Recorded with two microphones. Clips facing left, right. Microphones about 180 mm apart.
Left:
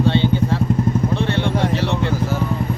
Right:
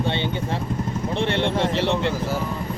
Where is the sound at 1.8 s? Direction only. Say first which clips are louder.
Even; 25° right (ahead or behind).